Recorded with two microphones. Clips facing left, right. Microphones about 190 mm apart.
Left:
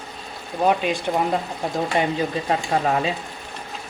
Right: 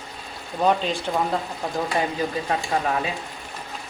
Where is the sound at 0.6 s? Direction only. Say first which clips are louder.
Left 1 dB; 10° left (ahead or behind).